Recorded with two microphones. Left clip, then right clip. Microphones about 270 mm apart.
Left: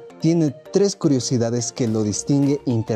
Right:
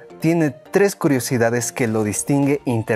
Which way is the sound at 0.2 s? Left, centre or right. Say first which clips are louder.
Right 1 dB; right.